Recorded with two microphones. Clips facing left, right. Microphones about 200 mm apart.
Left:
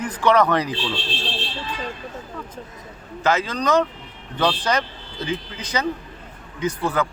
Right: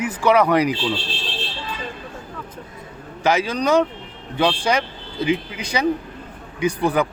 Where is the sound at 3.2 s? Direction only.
15° right (ahead or behind).